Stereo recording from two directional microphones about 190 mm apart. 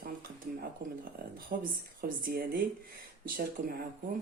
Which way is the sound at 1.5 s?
50° right (ahead or behind).